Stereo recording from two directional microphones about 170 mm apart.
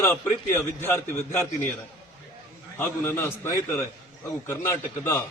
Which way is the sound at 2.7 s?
15° left (ahead or behind).